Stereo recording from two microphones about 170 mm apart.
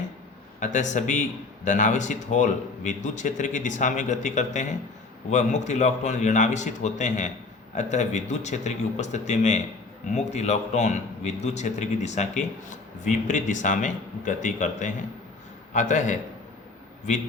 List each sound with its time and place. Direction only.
0.6 s a man's voice: 45° left (ahead or behind)